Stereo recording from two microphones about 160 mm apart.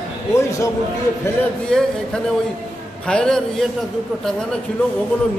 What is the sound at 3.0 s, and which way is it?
Speech, 5° left (ahead or behind).